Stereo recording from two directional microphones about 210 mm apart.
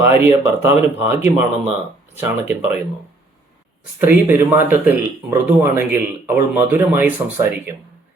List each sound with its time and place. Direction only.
0.0 s speech: 10° right (ahead or behind)
4.0 s speech: 10° right (ahead or behind)